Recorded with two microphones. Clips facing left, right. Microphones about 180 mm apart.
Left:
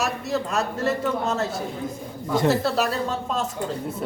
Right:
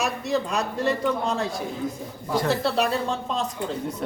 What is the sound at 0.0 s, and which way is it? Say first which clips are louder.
A man's voice: even; centre (ahead or behind).